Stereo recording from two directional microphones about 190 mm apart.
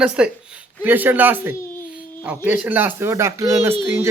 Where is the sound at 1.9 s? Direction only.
5° right (ahead or behind).